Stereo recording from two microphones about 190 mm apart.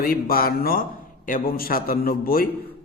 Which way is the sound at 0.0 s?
50° left (ahead or behind).